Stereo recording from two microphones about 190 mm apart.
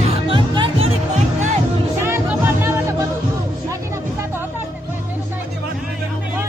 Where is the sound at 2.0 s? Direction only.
10° right (ahead or behind).